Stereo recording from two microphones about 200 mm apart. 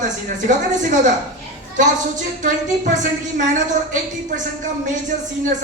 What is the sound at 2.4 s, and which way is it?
A woman's voice, 40° right (ahead or behind).